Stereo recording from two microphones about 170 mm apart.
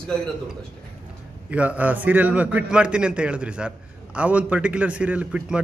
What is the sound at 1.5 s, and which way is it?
A man's voice, 10° right (ahead or behind).